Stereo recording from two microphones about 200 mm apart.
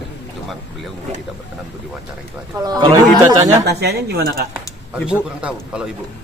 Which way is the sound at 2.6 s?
20° right (ahead or behind).